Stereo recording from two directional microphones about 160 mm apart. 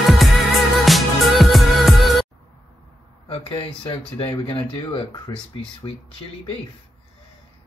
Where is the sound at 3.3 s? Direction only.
35° left (ahead or behind).